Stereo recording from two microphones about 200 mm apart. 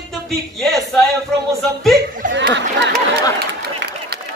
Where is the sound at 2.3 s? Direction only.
60° right (ahead or behind).